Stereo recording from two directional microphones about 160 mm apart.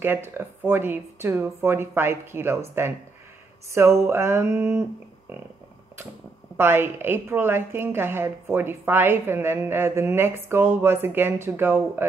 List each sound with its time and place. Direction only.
0.0 s a woman's voice: 15° right (ahead or behind)
6.5 s a woman's voice: 15° right (ahead or behind)